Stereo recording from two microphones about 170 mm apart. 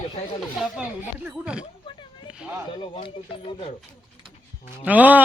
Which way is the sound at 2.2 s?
5° right (ahead or behind).